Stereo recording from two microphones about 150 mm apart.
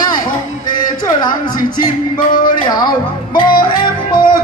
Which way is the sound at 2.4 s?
30° left (ahead or behind).